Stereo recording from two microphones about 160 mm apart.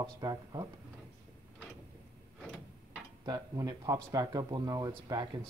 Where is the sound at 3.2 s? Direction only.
25° right (ahead or behind).